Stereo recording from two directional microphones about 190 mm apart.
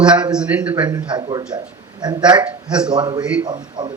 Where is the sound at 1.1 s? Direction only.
25° right (ahead or behind).